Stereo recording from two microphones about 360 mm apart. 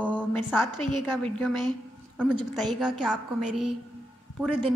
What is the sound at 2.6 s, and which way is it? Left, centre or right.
A woman's voice, centre.